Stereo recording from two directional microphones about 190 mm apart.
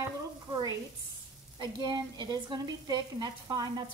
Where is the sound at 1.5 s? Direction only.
20° right (ahead or behind).